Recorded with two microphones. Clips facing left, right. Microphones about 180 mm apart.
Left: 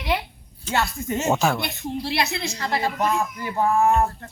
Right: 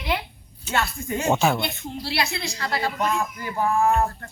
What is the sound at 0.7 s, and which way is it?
Speech, 20° left (ahead or behind).